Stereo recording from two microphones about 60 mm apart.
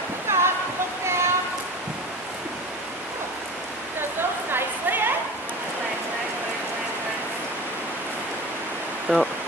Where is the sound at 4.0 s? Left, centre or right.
Right.